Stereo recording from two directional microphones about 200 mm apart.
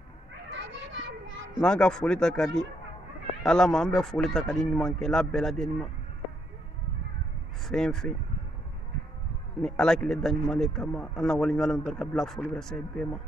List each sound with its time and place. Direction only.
0.5 s children playing: 65° right (ahead or behind)
1.5 s a man's voice: 5° left (ahead or behind)
7.6 s a man's voice: 5° left (ahead or behind)
9.6 s a man's voice: 5° left (ahead or behind)